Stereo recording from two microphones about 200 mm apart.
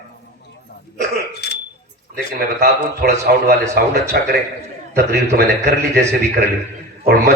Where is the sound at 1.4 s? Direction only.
55° left (ahead or behind).